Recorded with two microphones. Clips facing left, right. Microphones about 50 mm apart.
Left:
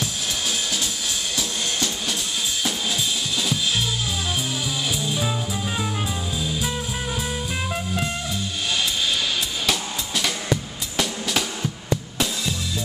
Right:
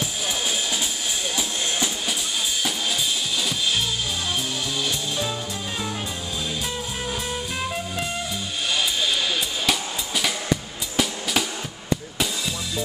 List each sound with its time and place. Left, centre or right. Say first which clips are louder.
1.3 s drum kit: even; centre
5.0 s music: left 2 dB; centre
7.7 s music: left 2 dB; centre
9.7 s music: even; centre